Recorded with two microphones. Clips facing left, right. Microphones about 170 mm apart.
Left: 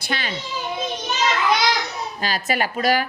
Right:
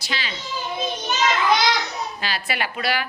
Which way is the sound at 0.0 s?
55° left (ahead or behind).